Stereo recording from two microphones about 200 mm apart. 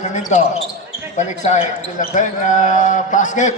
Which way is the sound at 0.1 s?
35° left (ahead or behind).